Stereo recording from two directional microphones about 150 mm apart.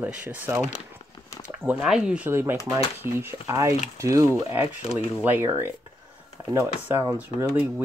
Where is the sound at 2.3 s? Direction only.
15° right (ahead or behind).